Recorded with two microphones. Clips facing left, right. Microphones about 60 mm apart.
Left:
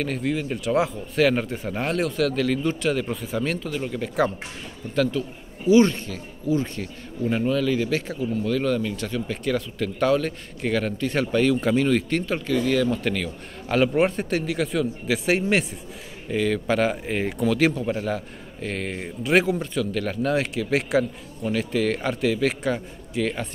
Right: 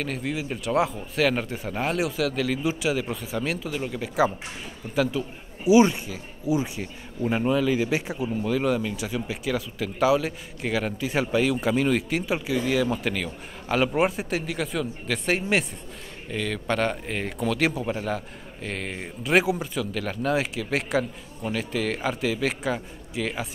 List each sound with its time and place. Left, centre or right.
0.0 s a man's voice: centre